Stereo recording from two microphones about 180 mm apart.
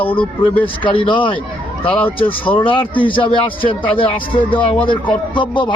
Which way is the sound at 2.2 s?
30° left (ahead or behind).